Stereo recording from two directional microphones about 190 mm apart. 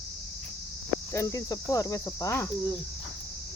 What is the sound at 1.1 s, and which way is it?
Cricket, 20° left (ahead or behind).